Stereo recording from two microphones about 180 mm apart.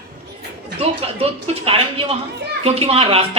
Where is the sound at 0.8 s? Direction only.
30° right (ahead or behind).